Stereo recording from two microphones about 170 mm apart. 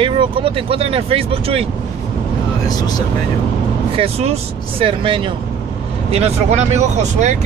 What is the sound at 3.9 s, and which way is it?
Speech, 35° right (ahead or behind).